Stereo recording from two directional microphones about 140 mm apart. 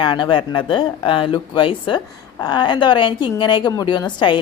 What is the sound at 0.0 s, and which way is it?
A woman's voice, 35° left (ahead or behind).